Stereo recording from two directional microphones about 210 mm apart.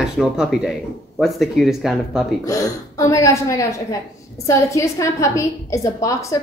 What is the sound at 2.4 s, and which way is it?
A woman's voice, 15° left (ahead or behind).